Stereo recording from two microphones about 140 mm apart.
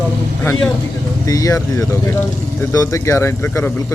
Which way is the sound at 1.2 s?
25° left (ahead or behind).